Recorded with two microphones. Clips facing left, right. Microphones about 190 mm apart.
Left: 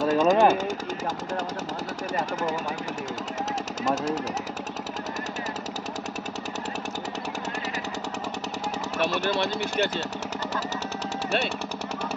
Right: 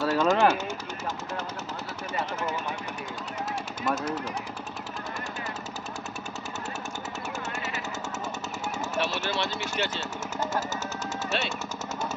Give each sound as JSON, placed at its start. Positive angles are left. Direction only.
{"t": 0.0, "sound": "jackhammer", "side_deg": 15}
{"t": 3.9, "sound": "jackhammer", "side_deg": 40}
{"t": 8.9, "sound": "speech", "side_deg": 40}